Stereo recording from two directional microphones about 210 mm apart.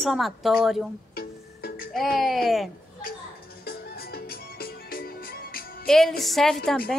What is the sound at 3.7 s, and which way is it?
Music, 45° left (ahead or behind).